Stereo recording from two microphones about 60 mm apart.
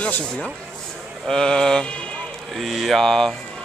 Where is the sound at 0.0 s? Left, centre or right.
Left.